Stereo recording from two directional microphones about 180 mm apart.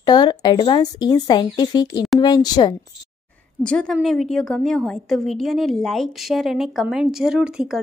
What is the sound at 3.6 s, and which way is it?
A woman's voice, 5° left (ahead or behind).